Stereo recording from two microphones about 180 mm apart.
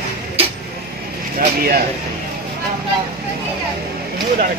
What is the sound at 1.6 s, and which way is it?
Speech, 60° right (ahead or behind).